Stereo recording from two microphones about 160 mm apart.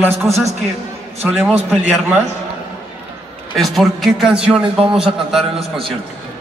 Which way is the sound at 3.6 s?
Centre (ahead or behind).